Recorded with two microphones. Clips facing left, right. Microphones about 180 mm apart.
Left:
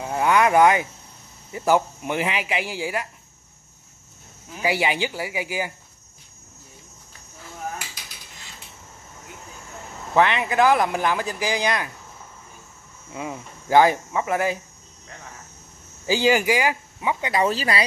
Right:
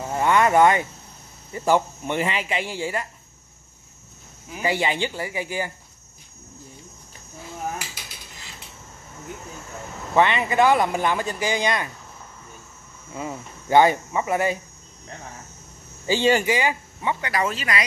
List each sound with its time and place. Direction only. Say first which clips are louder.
0.0 s a sound: even; 5° left (ahead or behind)
1.5 s speech: even; 5° left (ahead or behind)
4.6 s speech: left 1 dB; 5° left (ahead or behind)
10.1 s speech: even; centre (ahead or behind)
13.1 s speech: even; centre (ahead or behind)
16.1 s speech: even; 5° left (ahead or behind)
17.2 s speech: left 3 dB; 25° left (ahead or behind)